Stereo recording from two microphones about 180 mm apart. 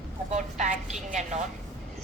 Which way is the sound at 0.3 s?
40° right (ahead or behind).